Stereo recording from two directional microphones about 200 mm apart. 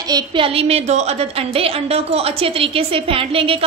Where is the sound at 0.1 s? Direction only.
25° right (ahead or behind).